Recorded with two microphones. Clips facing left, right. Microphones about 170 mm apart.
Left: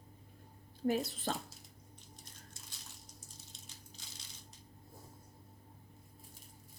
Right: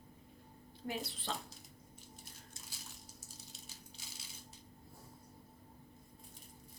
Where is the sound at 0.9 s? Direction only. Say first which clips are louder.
Left 7 dB; 45° left (ahead or behind).